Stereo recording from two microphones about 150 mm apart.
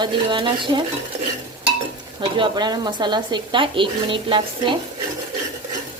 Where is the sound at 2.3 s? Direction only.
30° right (ahead or behind).